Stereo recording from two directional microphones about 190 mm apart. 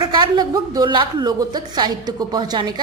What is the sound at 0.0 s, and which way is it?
A woman's voice, 20° right (ahead or behind).